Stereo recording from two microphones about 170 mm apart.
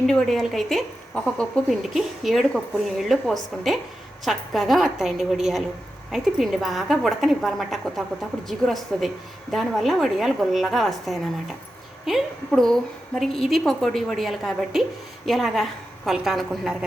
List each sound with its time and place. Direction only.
0.1 s a woman's voice: centre (ahead or behind)